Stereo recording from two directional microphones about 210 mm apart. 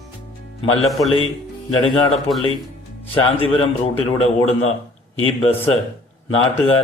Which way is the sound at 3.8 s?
30° left (ahead or behind).